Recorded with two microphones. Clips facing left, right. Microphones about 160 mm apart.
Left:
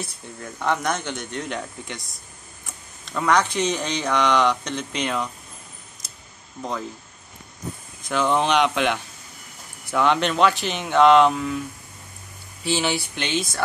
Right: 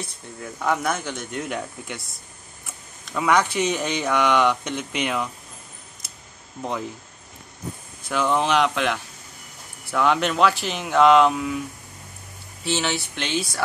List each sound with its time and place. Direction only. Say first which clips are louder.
0.0 s speech: even; 5° right (ahead or behind)
3.1 s speech: even; 5° right (ahead or behind)
8.1 s speech: left 1 dB; 5° right (ahead or behind)
12.6 s speech: left 2 dB; centre (ahead or behind)